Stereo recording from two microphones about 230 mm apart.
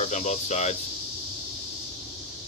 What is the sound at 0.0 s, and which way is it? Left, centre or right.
Speech, left.